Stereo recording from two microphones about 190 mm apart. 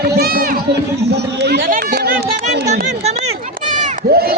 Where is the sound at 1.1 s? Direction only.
60° right (ahead or behind).